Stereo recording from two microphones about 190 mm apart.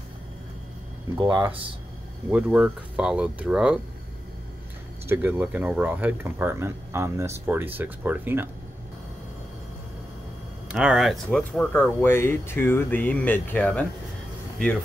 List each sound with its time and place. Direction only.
1.1 s speech: 20° right (ahead or behind)
2.2 s speech: 5° right (ahead or behind)
5.0 s speech: 10° right (ahead or behind)
10.7 s speech: 5° right (ahead or behind)